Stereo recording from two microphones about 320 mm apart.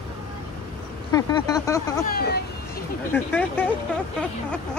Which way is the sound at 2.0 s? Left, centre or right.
Left.